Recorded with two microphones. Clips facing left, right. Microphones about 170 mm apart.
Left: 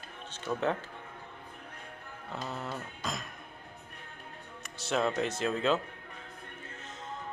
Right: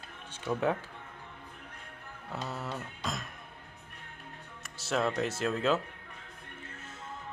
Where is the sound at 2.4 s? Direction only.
5° right (ahead or behind).